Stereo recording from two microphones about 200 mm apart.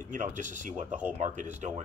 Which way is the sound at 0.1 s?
40° right (ahead or behind).